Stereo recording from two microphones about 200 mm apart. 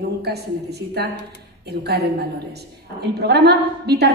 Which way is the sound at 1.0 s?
55° right (ahead or behind).